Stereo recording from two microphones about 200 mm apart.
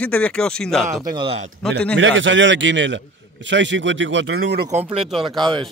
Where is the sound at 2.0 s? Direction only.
70° right (ahead or behind).